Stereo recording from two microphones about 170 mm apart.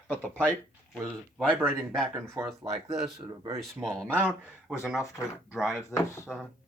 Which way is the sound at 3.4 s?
20° right (ahead or behind).